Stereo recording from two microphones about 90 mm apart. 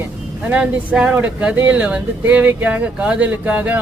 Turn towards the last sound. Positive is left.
turn(degrees=-20)  # may be behind; listen again after turning